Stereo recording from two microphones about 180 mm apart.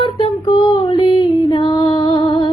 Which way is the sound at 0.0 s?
25° left (ahead or behind).